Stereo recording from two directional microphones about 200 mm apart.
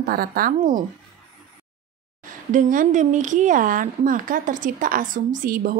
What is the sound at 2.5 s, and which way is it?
A woman's voice, 40° right (ahead or behind).